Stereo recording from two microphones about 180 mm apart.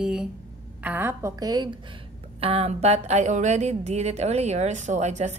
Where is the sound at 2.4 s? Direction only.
35° right (ahead or behind).